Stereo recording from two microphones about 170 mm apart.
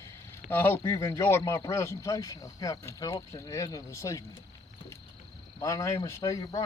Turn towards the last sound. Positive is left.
turn(degrees=20)  # may be behind; listen again after turning